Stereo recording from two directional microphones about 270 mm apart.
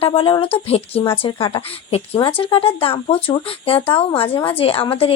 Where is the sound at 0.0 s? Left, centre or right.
Centre.